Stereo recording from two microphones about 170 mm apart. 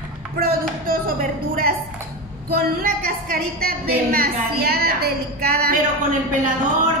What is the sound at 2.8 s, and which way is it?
A woman's voice, 60° right (ahead or behind).